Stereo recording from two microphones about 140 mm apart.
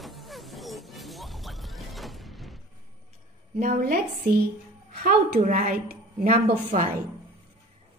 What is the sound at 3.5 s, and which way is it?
Speech, 90° right.